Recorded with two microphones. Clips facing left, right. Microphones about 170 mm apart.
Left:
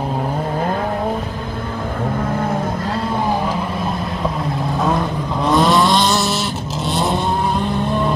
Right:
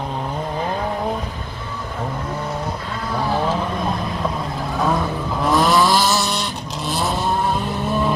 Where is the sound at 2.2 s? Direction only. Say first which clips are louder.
Left 5 dB; 55° left (ahead or behind).